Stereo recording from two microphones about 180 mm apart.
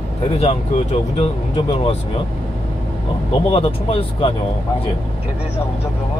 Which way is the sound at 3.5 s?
30° left (ahead or behind).